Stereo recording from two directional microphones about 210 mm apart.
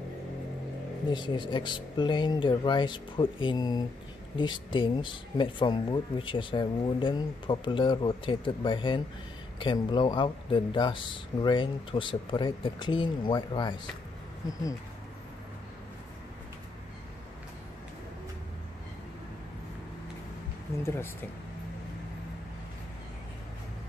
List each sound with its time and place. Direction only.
1.1 s speech: 20° left (ahead or behind)
20.8 s speech: 10° left (ahead or behind)